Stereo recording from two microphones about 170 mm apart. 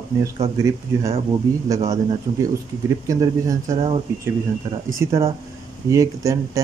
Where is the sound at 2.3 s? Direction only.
35° right (ahead or behind).